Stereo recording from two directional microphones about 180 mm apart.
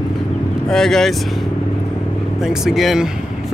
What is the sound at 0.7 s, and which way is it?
Speech, 5° left (ahead or behind).